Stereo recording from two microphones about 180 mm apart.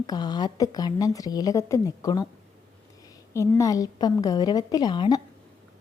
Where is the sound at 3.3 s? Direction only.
15° left (ahead or behind).